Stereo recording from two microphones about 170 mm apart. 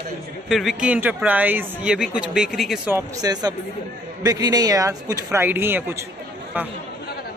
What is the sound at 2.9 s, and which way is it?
Speech, 20° right (ahead or behind).